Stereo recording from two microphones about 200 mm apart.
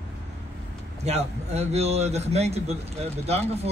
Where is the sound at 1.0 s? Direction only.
30° right (ahead or behind).